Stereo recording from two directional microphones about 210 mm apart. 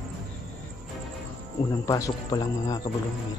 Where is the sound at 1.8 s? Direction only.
15° left (ahead or behind).